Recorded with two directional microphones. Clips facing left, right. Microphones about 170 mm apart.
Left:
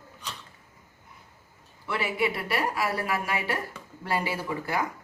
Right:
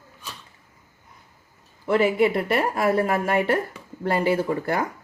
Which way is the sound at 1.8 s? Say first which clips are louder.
Right 9 dB; 45° right (ahead or behind).